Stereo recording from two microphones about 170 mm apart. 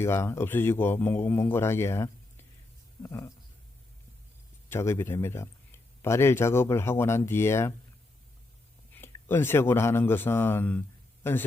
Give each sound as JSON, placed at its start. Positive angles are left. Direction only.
{"t": 0.0, "sound": "speech", "side_deg": 15}
{"t": 4.7, "sound": "speech", "side_deg": 15}
{"t": 9.0, "sound": "speech", "side_deg": 15}